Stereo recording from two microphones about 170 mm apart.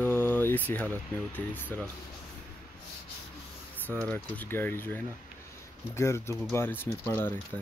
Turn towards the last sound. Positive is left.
turn(degrees=10)  # may be behind; listen again after turning